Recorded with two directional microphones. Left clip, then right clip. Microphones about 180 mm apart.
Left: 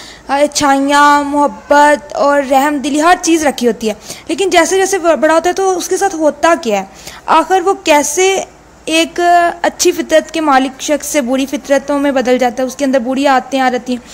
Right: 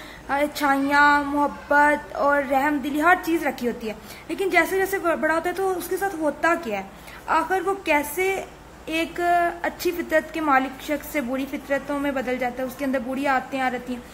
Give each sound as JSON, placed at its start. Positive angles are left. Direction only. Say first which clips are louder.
{"t": 0.3, "sound": "a woman's voice", "louder": "left 11 dB", "side_deg": 35}
{"t": 3.3, "sound": "a woman's voice", "louder": "left 13 dB", "side_deg": 45}